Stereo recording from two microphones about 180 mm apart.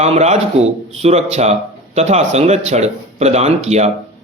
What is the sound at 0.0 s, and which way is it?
Speech, 40° right (ahead or behind).